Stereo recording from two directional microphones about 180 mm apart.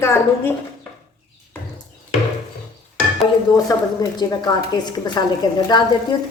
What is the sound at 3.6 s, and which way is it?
A woman's voice, 20° left (ahead or behind).